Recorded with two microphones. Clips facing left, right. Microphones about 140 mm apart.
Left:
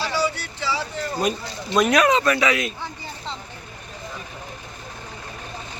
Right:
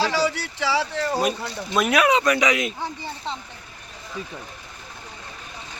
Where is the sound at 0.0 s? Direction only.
90° right.